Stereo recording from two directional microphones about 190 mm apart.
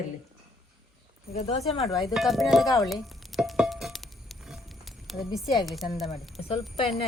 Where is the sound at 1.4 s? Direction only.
35° left (ahead or behind).